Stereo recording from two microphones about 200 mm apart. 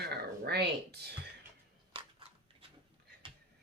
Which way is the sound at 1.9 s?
25° right (ahead or behind).